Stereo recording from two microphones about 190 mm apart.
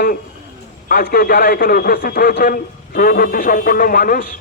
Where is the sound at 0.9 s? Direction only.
50° left (ahead or behind).